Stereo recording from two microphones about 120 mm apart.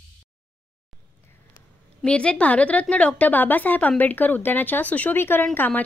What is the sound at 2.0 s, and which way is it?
A woman's voice, 10° left (ahead or behind).